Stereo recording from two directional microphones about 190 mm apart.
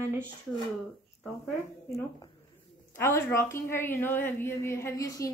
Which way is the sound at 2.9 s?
15° left (ahead or behind).